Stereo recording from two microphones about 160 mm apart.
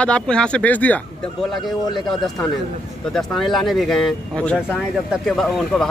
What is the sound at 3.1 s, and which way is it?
Speech, centre (ahead or behind).